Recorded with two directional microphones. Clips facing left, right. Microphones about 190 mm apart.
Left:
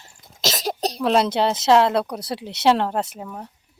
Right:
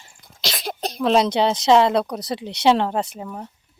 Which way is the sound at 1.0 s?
5° left (ahead or behind).